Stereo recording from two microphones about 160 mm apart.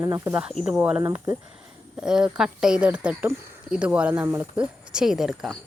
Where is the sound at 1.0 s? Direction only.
20° right (ahead or behind).